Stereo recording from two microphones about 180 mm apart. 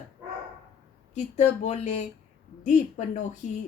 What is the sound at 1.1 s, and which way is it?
A woman's voice, 40° left (ahead or behind).